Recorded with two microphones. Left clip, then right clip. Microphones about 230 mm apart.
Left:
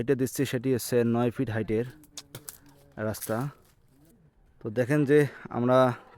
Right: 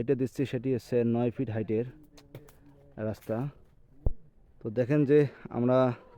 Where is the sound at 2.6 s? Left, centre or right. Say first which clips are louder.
Left 3 dB; centre.